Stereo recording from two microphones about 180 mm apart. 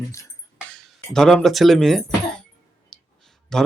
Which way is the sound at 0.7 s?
5° left (ahead or behind).